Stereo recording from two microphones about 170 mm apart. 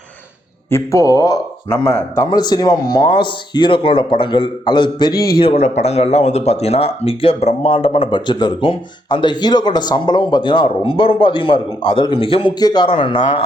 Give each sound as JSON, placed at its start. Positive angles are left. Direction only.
{"t": 0.7, "sound": "speech", "side_deg": 15}
{"t": 5.1, "sound": "speech", "side_deg": 65}
{"t": 5.4, "sound": "speech", "side_deg": 35}